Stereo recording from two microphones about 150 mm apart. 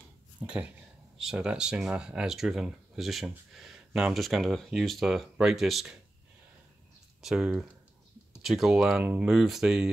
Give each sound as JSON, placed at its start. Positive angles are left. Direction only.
{"t": 0.4, "sound": "speech", "side_deg": -10}
{"t": 7.2, "sound": "speech", "side_deg": 0}